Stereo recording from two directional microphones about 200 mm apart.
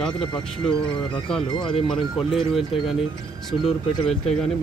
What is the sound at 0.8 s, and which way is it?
Speech, 25° left (ahead or behind).